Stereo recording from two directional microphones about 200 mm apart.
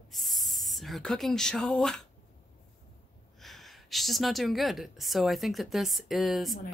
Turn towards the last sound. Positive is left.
turn(degrees=0)  # may be behind; listen again after turning